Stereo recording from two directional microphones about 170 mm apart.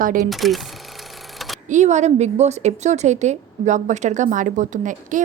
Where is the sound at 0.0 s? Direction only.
55° right (ahead or behind).